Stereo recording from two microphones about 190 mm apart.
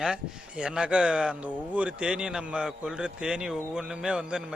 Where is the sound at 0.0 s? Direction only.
5° right (ahead or behind).